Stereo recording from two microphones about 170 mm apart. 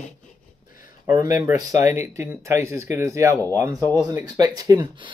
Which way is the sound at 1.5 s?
15° right (ahead or behind).